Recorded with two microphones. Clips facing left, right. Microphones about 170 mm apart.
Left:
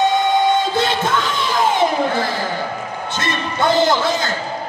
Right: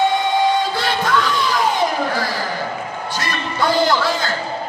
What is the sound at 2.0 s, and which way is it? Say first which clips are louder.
Speech: left 2 dB; 25° left (ahead or behind).